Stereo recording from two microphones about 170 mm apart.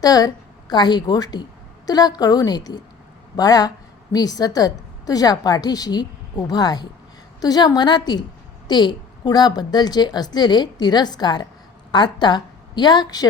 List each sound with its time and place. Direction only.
0.0 s a woman's voice: 20° left (ahead or behind)